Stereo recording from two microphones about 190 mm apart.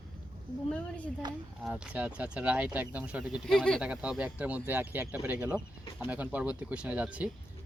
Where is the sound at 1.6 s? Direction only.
5° right (ahead or behind).